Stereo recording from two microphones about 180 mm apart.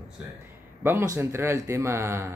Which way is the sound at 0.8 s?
15° right (ahead or behind).